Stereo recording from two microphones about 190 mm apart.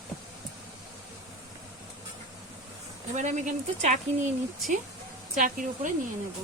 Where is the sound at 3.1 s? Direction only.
40° right (ahead or behind).